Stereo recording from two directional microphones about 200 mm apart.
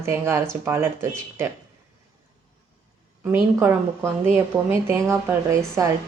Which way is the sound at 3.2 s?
10° right (ahead or behind).